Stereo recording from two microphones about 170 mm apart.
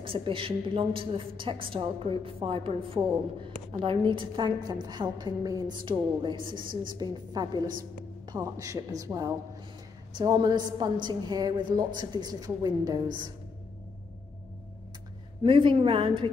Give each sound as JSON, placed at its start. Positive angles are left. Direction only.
{"t": 0.0, "sound": "a woman's voice", "side_deg": -30}
{"t": 15.4, "sound": "a woman's voice", "side_deg": -30}